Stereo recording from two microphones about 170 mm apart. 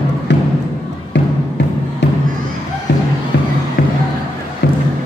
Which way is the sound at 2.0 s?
90° left.